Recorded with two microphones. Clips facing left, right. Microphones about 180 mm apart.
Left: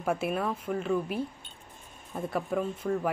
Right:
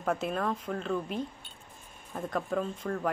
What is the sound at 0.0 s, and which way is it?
A woman's voice, 10° left (ahead or behind).